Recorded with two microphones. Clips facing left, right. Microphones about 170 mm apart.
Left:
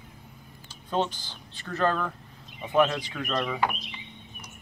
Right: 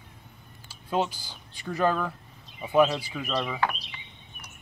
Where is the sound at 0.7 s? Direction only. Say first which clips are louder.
Even; 10° right (ahead or behind).